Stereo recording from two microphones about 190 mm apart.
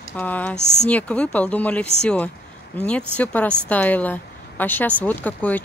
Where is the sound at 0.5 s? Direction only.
35° left (ahead or behind).